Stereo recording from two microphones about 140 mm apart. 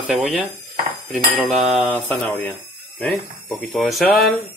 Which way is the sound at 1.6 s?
Centre (ahead or behind).